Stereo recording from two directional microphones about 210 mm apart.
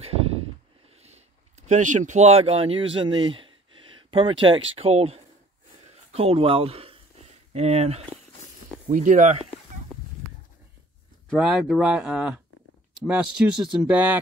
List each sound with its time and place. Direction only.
1.7 s speech: 35° right (ahead or behind)
5.9 s a sound: 30° right (ahead or behind)
7.5 s speech: 30° right (ahead or behind)
9.9 s livestock: 5° left (ahead or behind)
11.2 s speech: centre (ahead or behind)